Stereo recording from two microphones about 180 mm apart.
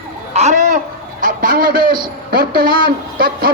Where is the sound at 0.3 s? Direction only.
40° right (ahead or behind).